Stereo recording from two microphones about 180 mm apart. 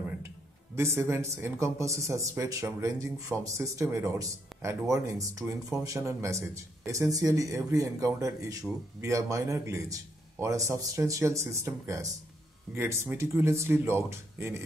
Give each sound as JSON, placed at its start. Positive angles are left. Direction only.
{"t": 0.7, "sound": "speech", "side_deg": -15}